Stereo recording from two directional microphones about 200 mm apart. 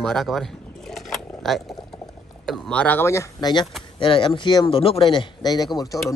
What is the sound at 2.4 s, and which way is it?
Speech, 5° left (ahead or behind).